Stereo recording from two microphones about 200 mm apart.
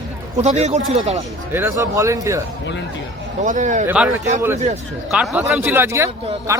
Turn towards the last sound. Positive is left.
turn(degrees=-15)  # may be behind; listen again after turning